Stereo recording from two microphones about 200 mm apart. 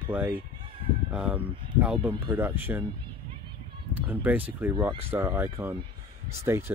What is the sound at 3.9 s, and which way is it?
Speech, 10° right (ahead or behind).